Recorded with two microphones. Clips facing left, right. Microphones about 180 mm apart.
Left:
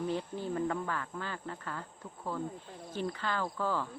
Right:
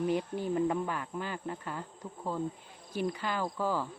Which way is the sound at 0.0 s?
15° right (ahead or behind).